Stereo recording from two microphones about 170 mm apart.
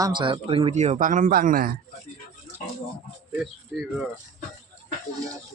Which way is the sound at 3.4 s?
5° right (ahead or behind).